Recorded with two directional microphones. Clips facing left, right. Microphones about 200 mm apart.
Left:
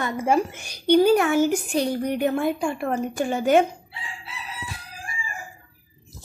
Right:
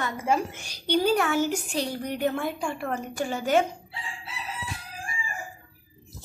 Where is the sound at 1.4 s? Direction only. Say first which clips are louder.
Left 5 dB; 50° left (ahead or behind).